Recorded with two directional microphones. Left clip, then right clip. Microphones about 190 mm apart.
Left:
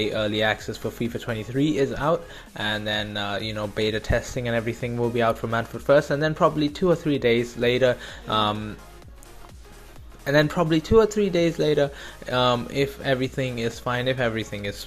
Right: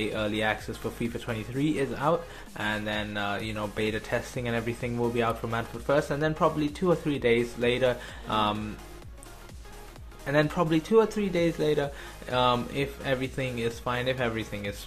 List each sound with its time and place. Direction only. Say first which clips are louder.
0.0 s speech: left 5 dB; 25° left (ahead or behind)
10.2 s speech: left 5 dB; 30° left (ahead or behind)